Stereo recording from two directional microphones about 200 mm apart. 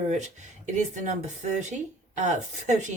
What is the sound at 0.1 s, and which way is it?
A woman's voice, 35° right (ahead or behind).